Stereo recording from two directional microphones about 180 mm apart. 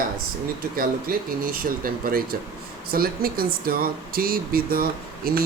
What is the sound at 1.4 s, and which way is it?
Speech, 50° right (ahead or behind).